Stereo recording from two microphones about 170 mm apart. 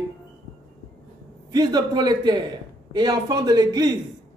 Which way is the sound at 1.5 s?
25° right (ahead or behind).